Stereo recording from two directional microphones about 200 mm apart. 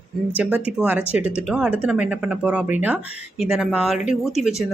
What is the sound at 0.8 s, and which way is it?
Speech, 5° right (ahead or behind).